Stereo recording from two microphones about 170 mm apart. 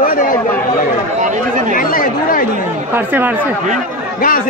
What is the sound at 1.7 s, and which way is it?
Chatter, 55° left (ahead or behind).